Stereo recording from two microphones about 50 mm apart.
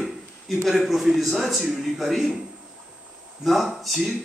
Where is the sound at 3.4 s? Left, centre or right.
Centre.